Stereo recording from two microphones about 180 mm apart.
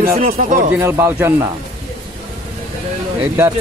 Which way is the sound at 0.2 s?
45° right (ahead or behind).